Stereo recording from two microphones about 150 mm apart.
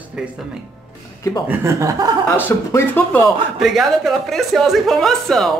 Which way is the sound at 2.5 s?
15° left (ahead or behind).